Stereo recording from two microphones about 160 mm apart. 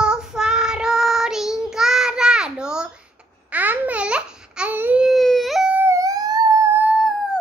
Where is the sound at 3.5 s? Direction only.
10° right (ahead or behind).